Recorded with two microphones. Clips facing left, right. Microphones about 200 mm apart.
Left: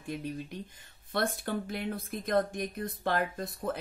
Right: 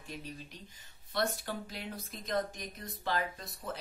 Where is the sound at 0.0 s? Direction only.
55° left (ahead or behind).